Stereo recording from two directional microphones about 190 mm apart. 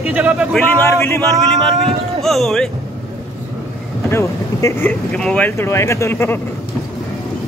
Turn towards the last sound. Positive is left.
turn(degrees=10)  # may be behind; listen again after turning